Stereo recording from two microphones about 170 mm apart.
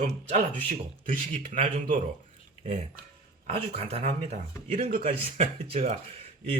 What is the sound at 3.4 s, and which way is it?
Speech, 35° right (ahead or behind).